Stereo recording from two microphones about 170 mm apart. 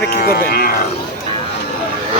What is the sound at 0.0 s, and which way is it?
Speech, 70° left (ahead or behind).